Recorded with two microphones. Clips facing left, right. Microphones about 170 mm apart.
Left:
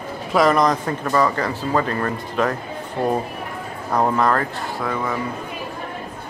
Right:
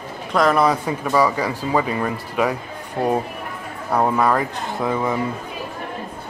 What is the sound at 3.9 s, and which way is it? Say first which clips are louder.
Speech: right 1 dB; 10° right (ahead or behind).